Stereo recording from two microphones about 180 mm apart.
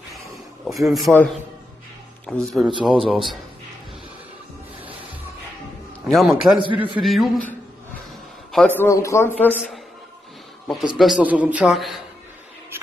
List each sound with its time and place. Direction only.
0.7 s a man's voice: centre (ahead or behind)
6.1 s a man's voice: centre (ahead or behind)
6.7 s a man's voice: 30° right (ahead or behind)
7.0 s a man's voice: centre (ahead or behind)
8.5 s a man's voice: 5° left (ahead or behind)
11.0 s a man's voice: 5° right (ahead or behind)